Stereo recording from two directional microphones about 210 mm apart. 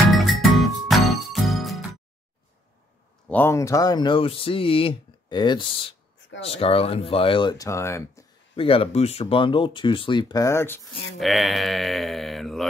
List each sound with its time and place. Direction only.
0.1 s music: centre (ahead or behind)
3.3 s speech: 10° left (ahead or behind)
8.5 s speech: 25° left (ahead or behind)
11.1 s mantra: centre (ahead or behind)